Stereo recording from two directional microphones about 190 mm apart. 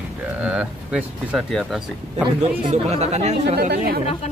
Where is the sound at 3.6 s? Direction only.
55° right (ahead or behind).